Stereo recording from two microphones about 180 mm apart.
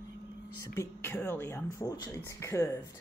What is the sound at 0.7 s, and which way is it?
Speech, 15° left (ahead or behind).